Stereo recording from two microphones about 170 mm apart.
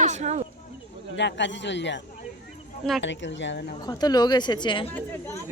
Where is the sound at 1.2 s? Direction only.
90° left.